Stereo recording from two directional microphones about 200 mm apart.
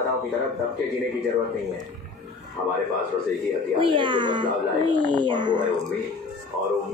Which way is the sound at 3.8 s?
25° right (ahead or behind).